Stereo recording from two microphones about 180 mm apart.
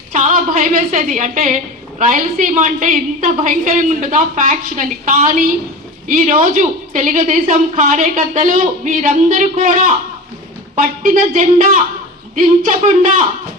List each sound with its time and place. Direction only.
0.1 s a woman's voice: 45° right (ahead or behind)